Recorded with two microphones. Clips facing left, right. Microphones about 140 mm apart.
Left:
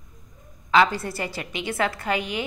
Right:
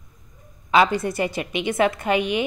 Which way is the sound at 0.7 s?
20° right (ahead or behind).